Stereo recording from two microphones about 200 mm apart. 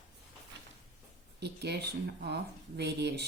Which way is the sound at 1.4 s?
55° right (ahead or behind).